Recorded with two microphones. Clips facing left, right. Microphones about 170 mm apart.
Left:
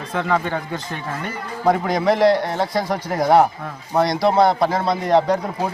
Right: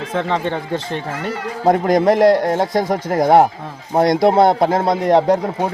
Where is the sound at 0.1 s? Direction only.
25° right (ahead or behind).